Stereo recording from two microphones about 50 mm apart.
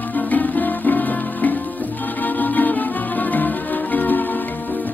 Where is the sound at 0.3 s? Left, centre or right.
Left.